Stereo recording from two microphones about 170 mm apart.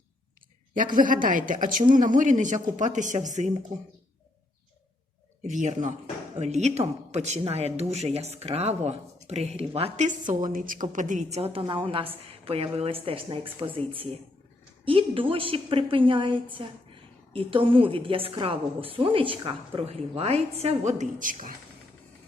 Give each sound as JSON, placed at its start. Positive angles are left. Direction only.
{"t": 0.9, "sound": "speech", "side_deg": -50}
{"t": 5.4, "sound": "speech", "side_deg": -45}